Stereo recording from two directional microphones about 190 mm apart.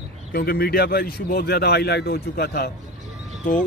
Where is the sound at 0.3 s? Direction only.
50° left (ahead or behind).